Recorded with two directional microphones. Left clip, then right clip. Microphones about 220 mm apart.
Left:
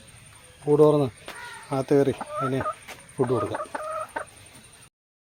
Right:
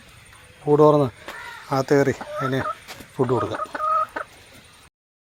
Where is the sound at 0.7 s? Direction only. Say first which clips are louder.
Right 3 dB; 25° right (ahead or behind).